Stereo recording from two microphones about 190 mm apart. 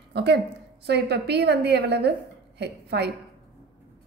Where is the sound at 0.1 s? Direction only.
60° right (ahead or behind).